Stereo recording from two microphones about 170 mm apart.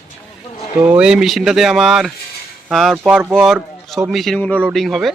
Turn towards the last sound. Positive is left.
turn(degrees=0)  # may be behind; listen again after turning